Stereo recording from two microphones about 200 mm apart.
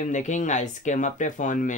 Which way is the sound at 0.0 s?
40° left (ahead or behind).